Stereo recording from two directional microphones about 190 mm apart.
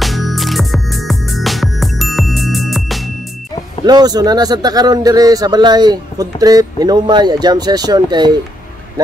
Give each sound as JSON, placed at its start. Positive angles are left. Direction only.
{"t": 0.0, "sound": "music", "side_deg": 0}
{"t": 3.8, "sound": "a man's voice", "side_deg": -20}